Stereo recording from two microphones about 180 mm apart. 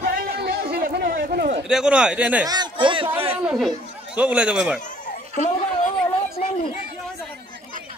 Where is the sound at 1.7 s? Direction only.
5° right (ahead or behind).